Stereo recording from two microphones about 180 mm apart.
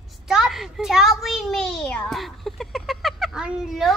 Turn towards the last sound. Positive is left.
turn(degrees=0)  # may be behind; listen again after turning